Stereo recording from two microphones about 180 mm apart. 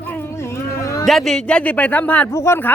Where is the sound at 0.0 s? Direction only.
10° left (ahead or behind).